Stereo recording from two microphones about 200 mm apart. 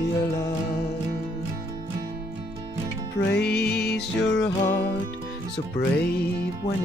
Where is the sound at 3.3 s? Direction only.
55° left (ahead or behind).